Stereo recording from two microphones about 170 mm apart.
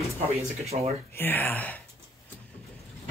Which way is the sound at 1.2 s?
10° left (ahead or behind).